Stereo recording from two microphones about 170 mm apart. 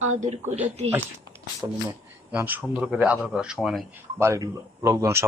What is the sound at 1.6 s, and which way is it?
A man's voice, 15° right (ahead or behind).